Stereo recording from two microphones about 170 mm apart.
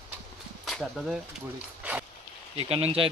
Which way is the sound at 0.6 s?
Centre (ahead or behind).